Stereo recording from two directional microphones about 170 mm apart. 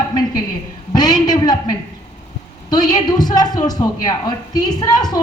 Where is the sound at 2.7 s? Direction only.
25° left (ahead or behind).